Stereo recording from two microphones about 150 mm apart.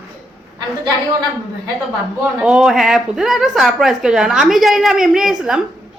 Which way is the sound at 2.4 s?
5° right (ahead or behind).